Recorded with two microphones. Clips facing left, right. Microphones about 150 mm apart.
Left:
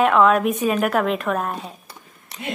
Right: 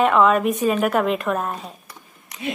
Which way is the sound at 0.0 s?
Centre (ahead or behind).